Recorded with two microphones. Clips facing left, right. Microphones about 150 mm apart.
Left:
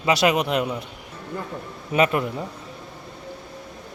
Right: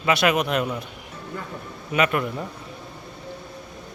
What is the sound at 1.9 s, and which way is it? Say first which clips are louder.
Speech: left 2 dB; 30° left (ahead or behind).